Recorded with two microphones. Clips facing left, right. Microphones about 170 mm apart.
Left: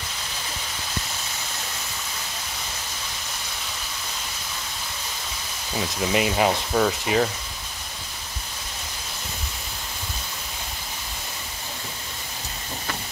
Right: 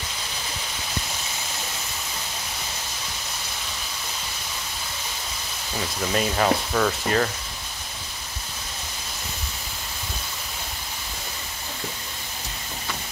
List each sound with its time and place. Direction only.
6.1 s speech: 10° left (ahead or behind)